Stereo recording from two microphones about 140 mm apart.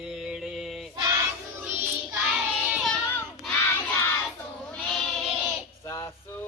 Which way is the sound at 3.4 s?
10° left (ahead or behind).